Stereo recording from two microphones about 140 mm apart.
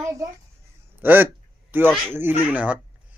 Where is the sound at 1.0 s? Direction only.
15° right (ahead or behind).